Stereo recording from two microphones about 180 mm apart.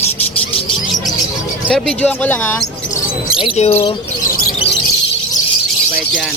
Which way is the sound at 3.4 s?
35° left (ahead or behind).